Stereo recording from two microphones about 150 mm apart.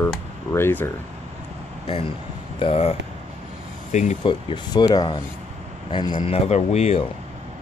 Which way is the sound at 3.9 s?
50° left (ahead or behind).